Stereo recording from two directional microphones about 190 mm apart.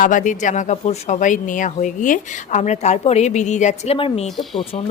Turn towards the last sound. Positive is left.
turn(degrees=30)  # may be behind; listen again after turning